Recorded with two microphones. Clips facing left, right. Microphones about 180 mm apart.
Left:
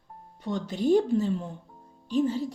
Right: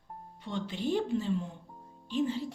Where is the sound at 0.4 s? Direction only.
40° left (ahead or behind).